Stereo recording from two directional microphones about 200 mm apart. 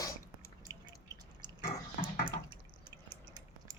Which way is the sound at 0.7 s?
15° right (ahead or behind).